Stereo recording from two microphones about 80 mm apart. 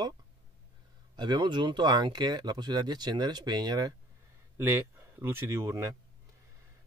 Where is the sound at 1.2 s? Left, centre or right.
Right.